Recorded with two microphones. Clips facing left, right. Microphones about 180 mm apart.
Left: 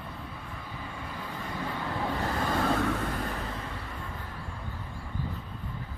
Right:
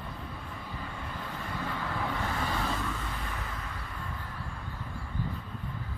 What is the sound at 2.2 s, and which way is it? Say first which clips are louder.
Vehicle: left 4 dB; 50° left (ahead or behind).